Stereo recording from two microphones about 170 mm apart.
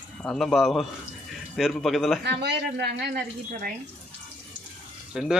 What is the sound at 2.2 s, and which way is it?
Speech, 75° right (ahead or behind).